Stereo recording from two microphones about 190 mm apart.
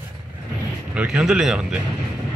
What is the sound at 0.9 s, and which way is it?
Speech, 5° right (ahead or behind).